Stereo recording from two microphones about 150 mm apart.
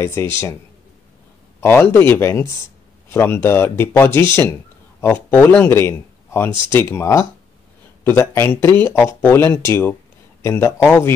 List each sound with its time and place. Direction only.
0.0 s speech: 15° left (ahead or behind)
1.6 s speech: 15° left (ahead or behind)